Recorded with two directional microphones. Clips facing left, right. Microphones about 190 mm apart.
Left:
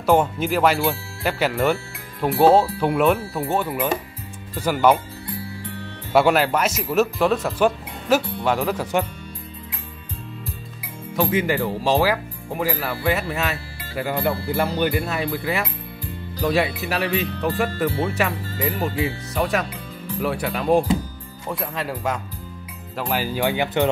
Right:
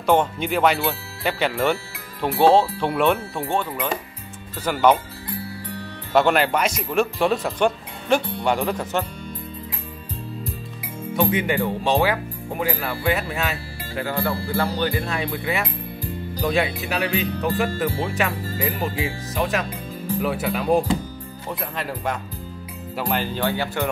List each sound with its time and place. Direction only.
0.0 s speech: 5° left (ahead or behind)
6.1 s speech: 5° left (ahead or behind)
11.1 s speech: centre (ahead or behind)
14.0 s speech: 20° left (ahead or behind)
15.0 s speech: 5° left (ahead or behind)